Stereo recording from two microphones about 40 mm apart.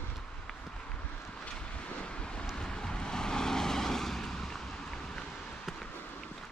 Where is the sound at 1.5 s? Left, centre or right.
Left.